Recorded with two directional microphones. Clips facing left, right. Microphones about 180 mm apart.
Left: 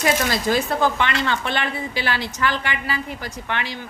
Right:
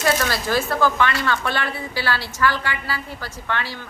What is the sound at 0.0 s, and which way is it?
Speech, 20° left (ahead or behind).